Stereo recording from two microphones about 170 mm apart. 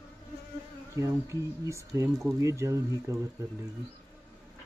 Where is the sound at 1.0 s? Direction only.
20° right (ahead or behind).